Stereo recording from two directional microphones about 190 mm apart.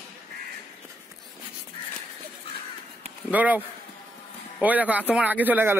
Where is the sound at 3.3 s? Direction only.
10° right (ahead or behind).